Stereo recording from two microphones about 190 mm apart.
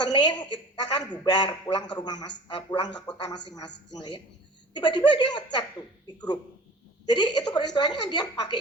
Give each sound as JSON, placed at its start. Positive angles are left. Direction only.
{"t": 0.0, "sound": "a woman's voice", "side_deg": 25}
{"t": 7.0, "sound": "a woman's voice", "side_deg": 20}